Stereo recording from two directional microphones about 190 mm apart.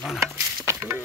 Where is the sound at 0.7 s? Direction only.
15° right (ahead or behind).